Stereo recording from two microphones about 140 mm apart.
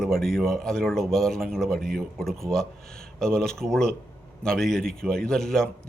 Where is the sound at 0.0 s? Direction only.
Centre (ahead or behind).